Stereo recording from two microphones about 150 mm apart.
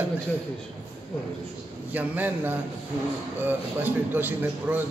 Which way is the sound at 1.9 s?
10° right (ahead or behind).